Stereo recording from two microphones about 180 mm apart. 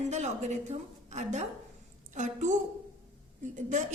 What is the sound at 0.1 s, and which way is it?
A woman's voice, 40° right (ahead or behind).